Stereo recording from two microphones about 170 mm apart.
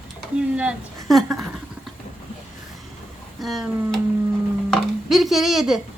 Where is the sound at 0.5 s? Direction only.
5° right (ahead or behind).